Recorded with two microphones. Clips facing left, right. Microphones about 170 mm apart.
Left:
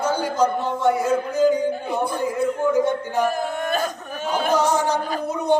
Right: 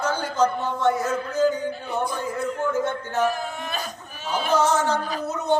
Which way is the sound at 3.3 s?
50° left (ahead or behind).